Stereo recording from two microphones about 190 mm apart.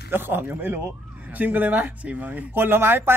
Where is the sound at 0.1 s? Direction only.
10° right (ahead or behind).